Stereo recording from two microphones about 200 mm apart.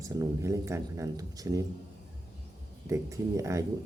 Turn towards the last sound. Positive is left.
turn(degrees=-15)  # may be behind; listen again after turning